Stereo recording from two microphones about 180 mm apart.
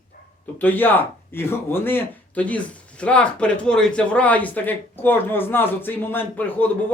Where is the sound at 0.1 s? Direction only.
55° left (ahead or behind).